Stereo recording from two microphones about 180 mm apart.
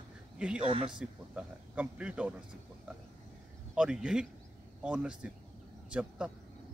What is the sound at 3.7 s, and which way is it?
A man's voice, 5° right (ahead or behind).